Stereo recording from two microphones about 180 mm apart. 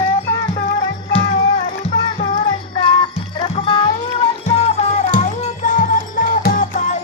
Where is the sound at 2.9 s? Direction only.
30° left (ahead or behind).